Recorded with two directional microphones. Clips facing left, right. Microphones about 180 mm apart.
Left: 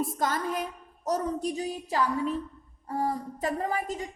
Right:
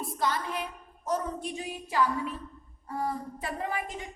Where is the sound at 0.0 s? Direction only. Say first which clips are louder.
Left 2 dB; 45° left (ahead or behind).